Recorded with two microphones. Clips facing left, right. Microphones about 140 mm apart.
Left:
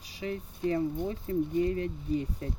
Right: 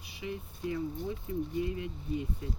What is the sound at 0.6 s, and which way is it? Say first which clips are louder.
Speech: left 6 dB; 65° left (ahead or behind).